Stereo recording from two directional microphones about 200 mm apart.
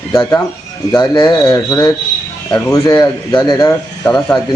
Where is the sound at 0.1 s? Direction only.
15° left (ahead or behind).